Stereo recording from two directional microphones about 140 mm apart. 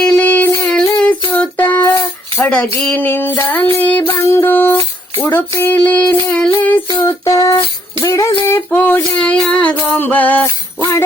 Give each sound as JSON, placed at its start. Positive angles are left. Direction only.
{"t": 0.0, "sound": "music", "side_deg": 10}
{"t": 1.3, "sound": "child singing", "side_deg": 15}
{"t": 2.4, "sound": "a sound", "side_deg": 10}
{"t": 2.8, "sound": "music", "side_deg": 10}
{"t": 7.0, "sound": "a sound", "side_deg": 20}
{"t": 8.4, "sound": "music", "side_deg": 15}